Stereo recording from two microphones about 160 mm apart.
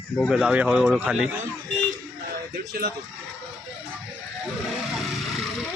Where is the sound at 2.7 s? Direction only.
65° right (ahead or behind).